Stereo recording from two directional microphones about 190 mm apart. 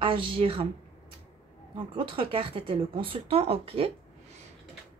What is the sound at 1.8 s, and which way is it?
Speech, 25° right (ahead or behind).